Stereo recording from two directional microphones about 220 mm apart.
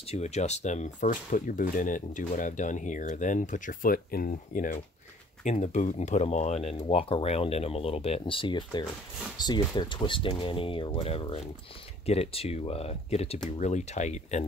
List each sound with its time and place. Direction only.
0.0 s speech: 30° left (ahead or behind)